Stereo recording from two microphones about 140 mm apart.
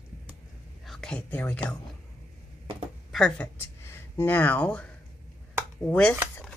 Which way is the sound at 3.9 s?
15° left (ahead or behind).